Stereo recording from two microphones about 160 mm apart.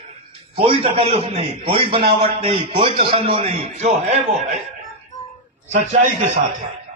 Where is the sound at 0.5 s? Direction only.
35° right (ahead or behind).